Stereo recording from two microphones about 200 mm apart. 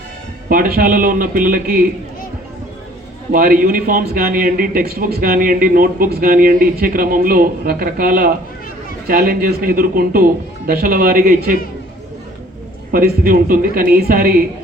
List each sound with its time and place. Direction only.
0.4 s a man's voice: 45° right (ahead or behind)
3.3 s a man's voice: 45° right (ahead or behind)
12.9 s a man's voice: 45° right (ahead or behind)